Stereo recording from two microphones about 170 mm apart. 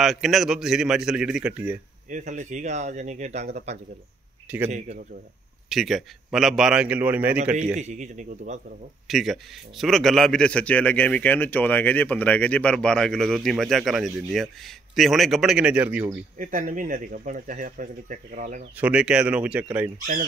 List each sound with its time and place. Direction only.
0.0 s a man's voice: centre (ahead or behind)
2.0 s speech: 45° right (ahead or behind)
5.7 s a man's voice: centre (ahead or behind)
7.7 s speech: 40° right (ahead or behind)
9.0 s a man's voice: centre (ahead or behind)
16.3 s speech: 50° right (ahead or behind)
18.8 s speech: 5° right (ahead or behind)